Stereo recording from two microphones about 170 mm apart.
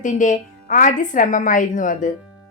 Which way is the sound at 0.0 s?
50° left (ahead or behind).